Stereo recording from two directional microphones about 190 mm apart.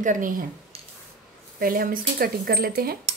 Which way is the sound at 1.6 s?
50° right (ahead or behind).